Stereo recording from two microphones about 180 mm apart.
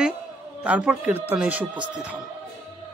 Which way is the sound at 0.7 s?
5° right (ahead or behind).